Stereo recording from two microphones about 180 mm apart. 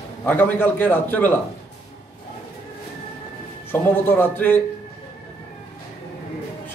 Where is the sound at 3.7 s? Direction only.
10° left (ahead or behind).